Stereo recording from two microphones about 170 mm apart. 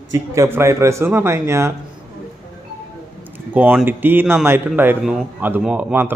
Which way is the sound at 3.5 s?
10° right (ahead or behind).